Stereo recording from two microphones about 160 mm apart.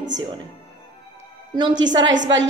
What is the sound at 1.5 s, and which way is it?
Speech, 25° right (ahead or behind).